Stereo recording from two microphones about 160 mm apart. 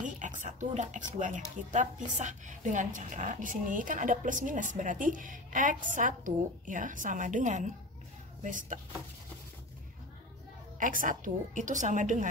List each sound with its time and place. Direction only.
0.0 s a sound: 50° right (ahead or behind)
1.2 s a woman's voice: 50° right (ahead or behind)
10.8 s a woman's voice: 55° right (ahead or behind)